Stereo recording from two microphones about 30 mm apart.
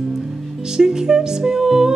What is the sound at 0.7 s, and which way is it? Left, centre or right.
Music, right.